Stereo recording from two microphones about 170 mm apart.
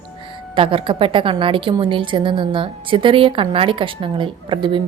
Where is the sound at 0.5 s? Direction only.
30° right (ahead or behind).